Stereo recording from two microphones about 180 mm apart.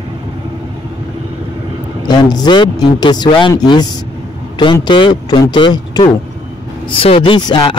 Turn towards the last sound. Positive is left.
turn(degrees=25)  # may be behind; listen again after turning